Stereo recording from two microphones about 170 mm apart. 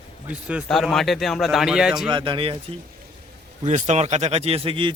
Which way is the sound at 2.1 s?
30° right (ahead or behind).